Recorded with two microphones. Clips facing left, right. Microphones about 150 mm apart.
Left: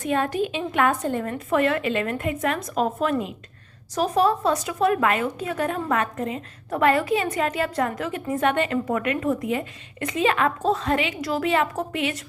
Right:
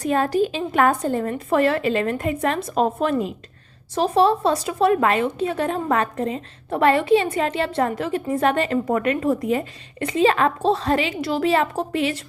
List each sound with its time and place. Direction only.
0.0 s a woman's voice: 35° right (ahead or behind)